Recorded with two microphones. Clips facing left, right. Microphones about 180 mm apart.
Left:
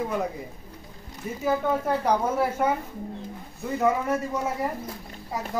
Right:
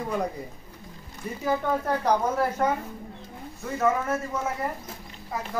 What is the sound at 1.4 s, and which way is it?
A woman's voice, 10° left (ahead or behind).